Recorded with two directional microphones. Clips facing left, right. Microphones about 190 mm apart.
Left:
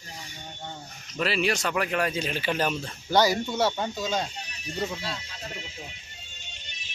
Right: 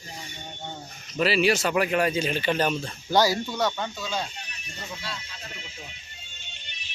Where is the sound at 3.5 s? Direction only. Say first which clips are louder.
Left 1 dB; 30° left (ahead or behind).